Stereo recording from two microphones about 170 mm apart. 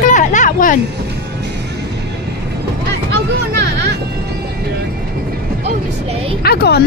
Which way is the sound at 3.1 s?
80° right.